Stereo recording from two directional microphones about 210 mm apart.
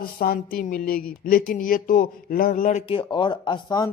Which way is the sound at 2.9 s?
25° left (ahead or behind).